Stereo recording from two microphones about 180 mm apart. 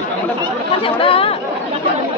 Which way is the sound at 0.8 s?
30° left (ahead or behind).